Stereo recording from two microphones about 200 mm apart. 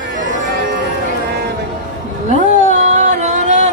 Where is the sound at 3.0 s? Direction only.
35° right (ahead or behind).